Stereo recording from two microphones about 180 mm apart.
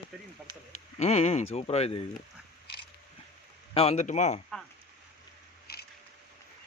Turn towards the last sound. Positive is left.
turn(degrees=60)  # may be behind; listen again after turning